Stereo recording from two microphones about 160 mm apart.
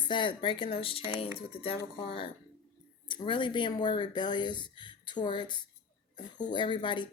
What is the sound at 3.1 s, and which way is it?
Speech, 30° left (ahead or behind).